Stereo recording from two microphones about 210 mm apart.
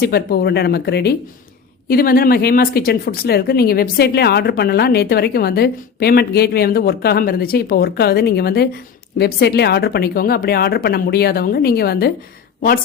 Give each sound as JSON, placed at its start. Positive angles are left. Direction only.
{"t": 0.0, "sound": "speech", "side_deg": 50}